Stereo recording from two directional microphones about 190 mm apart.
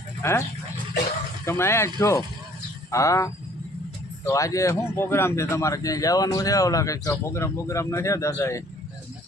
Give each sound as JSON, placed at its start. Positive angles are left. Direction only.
{"t": 0.2, "sound": "speech", "side_deg": 15}
{"t": 1.5, "sound": "a man's voice", "side_deg": 15}